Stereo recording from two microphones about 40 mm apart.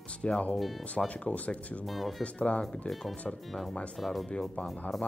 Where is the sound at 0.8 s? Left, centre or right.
Left.